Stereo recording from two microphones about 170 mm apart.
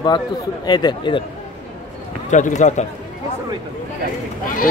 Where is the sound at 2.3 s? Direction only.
45° left (ahead or behind).